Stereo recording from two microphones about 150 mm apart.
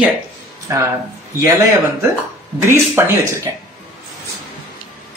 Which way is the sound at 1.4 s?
20° right (ahead or behind).